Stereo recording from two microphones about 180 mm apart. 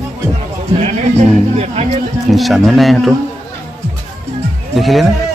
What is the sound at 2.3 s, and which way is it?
Speech, centre (ahead or behind).